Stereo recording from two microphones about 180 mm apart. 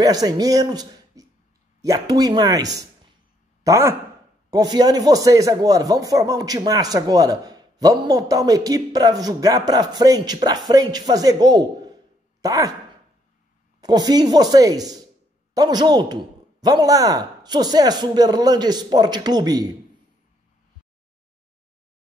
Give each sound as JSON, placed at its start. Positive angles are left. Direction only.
{"t": 0.0, "sound": "speech", "side_deg": -20}
{"t": 13.7, "sound": "speech", "side_deg": -20}